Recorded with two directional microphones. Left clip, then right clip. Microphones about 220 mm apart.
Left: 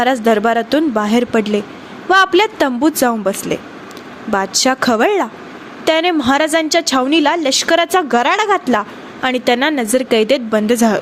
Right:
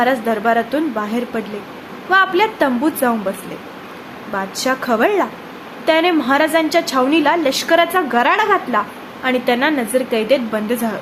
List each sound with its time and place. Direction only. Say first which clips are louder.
0.0 s a woman's voice: left 3 dB; 35° left (ahead or behind)